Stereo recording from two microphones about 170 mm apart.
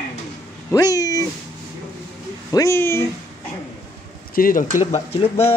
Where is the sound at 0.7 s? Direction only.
20° left (ahead or behind).